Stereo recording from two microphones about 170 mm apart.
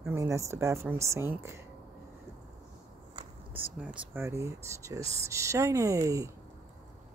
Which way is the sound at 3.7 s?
10° right (ahead or behind).